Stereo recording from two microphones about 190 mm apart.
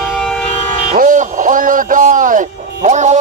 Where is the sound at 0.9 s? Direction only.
45° right (ahead or behind).